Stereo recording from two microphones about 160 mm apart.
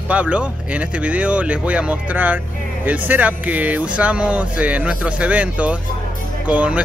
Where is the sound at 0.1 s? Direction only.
5° right (ahead or behind).